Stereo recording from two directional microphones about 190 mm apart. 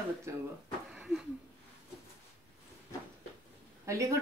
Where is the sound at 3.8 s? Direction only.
15° right (ahead or behind).